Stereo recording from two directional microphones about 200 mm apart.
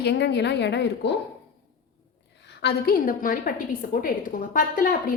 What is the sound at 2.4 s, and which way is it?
A woman's voice, 55° left (ahead or behind).